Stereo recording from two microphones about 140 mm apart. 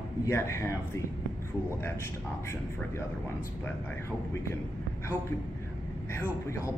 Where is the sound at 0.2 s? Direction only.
20° left (ahead or behind).